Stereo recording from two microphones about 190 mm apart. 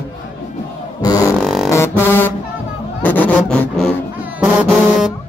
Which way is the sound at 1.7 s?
10° left (ahead or behind).